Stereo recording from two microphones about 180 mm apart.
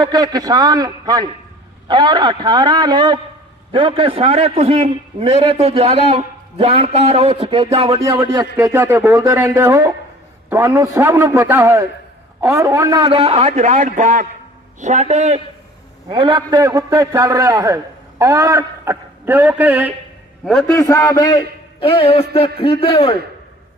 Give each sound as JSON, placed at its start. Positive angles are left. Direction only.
{"t": 0.0, "sound": "a man's voice", "side_deg": -25}
{"t": 8.5, "sound": "a man's voice", "side_deg": -15}
{"t": 16.0, "sound": "a man's voice", "side_deg": -25}
{"t": 20.4, "sound": "a man's voice", "side_deg": 0}
{"t": 20.7, "sound": "a man's voice", "side_deg": 15}